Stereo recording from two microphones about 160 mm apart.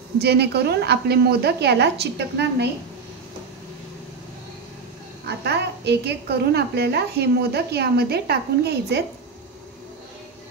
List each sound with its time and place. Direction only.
0.2 s a woman's voice: 90° right
5.4 s a woman's voice: 90° right